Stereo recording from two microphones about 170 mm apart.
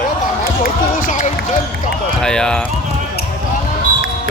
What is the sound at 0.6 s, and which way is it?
Speech, 50° left (ahead or behind).